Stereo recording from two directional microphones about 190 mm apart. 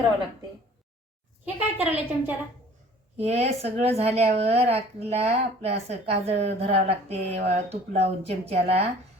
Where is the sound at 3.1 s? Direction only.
35° right (ahead or behind).